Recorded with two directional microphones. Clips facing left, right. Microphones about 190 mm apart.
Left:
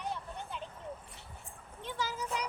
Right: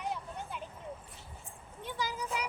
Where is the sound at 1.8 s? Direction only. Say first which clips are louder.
Even; 10° right (ahead or behind).